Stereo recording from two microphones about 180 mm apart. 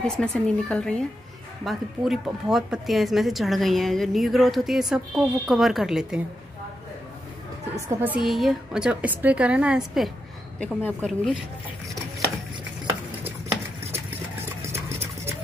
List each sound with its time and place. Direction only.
0.0 s speech: 5° left (ahead or behind)
7.9 s a woman's voice: 10° right (ahead or behind)
13.9 s clip-clop: 15° right (ahead or behind)